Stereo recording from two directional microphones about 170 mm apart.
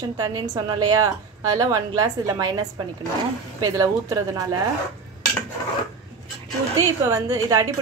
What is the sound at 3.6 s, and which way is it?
Speech, 20° right (ahead or behind).